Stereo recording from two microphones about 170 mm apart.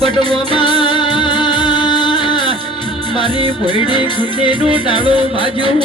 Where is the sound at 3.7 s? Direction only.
25° left (ahead or behind).